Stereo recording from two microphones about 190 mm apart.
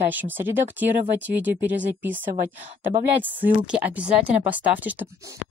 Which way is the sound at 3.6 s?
5° right (ahead or behind).